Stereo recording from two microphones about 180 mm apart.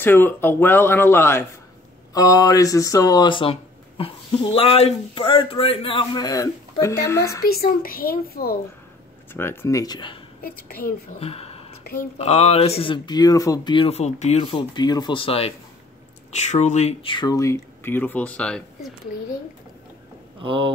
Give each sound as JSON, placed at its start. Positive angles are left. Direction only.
{"t": 0.0, "sound": "speech", "side_deg": 10}
{"t": 4.6, "sound": "speech", "side_deg": 30}
{"t": 7.4, "sound": "speech", "side_deg": 55}
{"t": 9.3, "sound": "speech", "side_deg": 15}
{"t": 10.4, "sound": "speech", "side_deg": 55}
{"t": 11.1, "sound": "a sound", "side_deg": 35}
{"t": 12.2, "sound": "speech", "side_deg": 35}
{"t": 20.4, "sound": "speech", "side_deg": -30}